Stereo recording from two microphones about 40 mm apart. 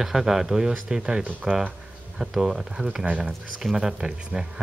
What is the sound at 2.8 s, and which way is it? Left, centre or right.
Speech, right.